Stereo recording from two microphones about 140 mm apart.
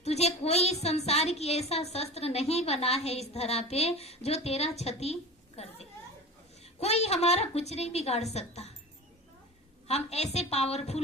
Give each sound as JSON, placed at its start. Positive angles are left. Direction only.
{"t": 0.0, "sound": "a woman's voice", "side_deg": 50}
{"t": 5.6, "sound": "a sound", "side_deg": 50}
{"t": 6.7, "sound": "a woman's voice", "side_deg": 50}
{"t": 9.8, "sound": "a woman's voice", "side_deg": 50}